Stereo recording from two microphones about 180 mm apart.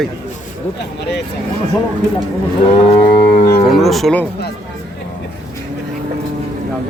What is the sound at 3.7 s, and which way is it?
Speech, centre (ahead or behind).